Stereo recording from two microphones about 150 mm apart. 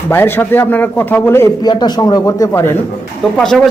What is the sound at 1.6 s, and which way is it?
A man's voice, 25° left (ahead or behind).